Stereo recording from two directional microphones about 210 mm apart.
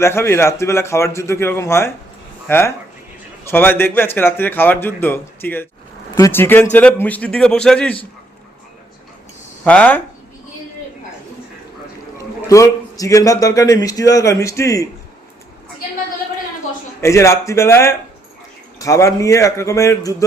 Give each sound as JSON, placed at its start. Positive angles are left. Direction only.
{"t": 0.0, "sound": "a man's voice", "side_deg": 10}
{"t": 9.6, "sound": "a man's voice", "side_deg": 10}
{"t": 12.1, "sound": "a man's voice", "side_deg": 15}
{"t": 17.0, "sound": "a man's voice", "side_deg": 15}